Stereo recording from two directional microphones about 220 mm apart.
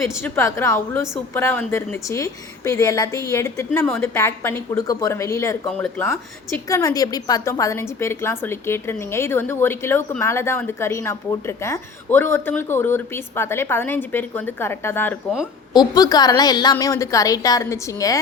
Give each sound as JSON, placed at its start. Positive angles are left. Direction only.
{"t": 0.0, "sound": "a woman's voice", "side_deg": 10}